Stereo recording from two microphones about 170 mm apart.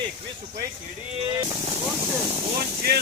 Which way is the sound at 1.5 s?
25° right (ahead or behind).